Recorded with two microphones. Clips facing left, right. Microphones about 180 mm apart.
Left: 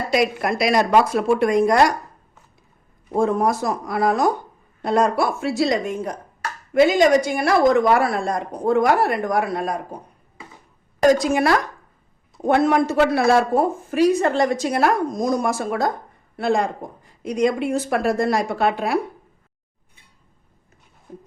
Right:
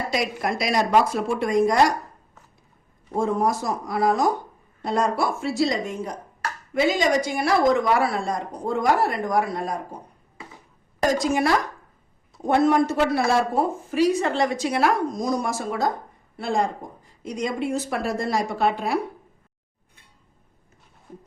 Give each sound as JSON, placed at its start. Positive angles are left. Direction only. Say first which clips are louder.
{"t": 0.1, "sound": "a woman's voice", "louder": "left 9 dB", "side_deg": 65}
{"t": 3.2, "sound": "a woman's voice", "louder": "left 3 dB", "side_deg": 65}
{"t": 11.2, "sound": "a woman's voice", "louder": "left 3 dB", "side_deg": 65}
{"t": 13.9, "sound": "a woman's voice", "louder": "left 3 dB", "side_deg": 50}